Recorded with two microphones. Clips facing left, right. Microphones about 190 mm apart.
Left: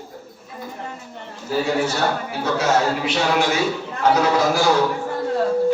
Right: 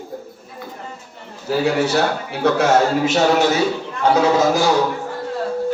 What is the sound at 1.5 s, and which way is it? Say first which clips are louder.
Speech: right 2 dB; 90° right.